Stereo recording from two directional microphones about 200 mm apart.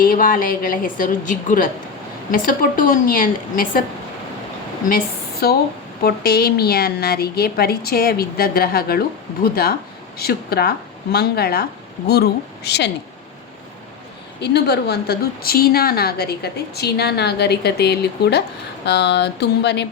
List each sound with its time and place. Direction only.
0.0 s a woman's voice: 45° left (ahead or behind)
4.9 s a woman's voice: 50° left (ahead or behind)
14.4 s a woman's voice: 55° left (ahead or behind)
18.9 s a sound: 55° left (ahead or behind)